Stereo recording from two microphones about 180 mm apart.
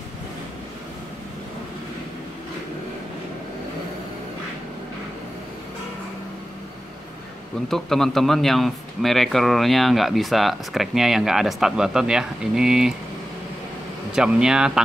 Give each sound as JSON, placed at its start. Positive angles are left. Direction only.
{"t": 7.6, "sound": "a man's voice", "side_deg": 0}
{"t": 14.1, "sound": "a man's voice", "side_deg": -5}